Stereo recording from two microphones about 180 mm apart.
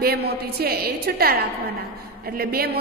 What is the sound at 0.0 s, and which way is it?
A woman's voice, 60° right (ahead or behind).